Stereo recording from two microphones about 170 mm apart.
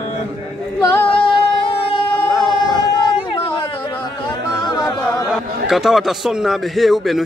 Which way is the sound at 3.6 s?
25° left (ahead or behind).